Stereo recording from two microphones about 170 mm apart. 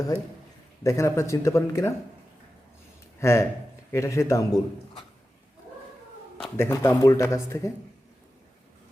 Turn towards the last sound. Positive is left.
turn(degrees=15)  # may be behind; listen again after turning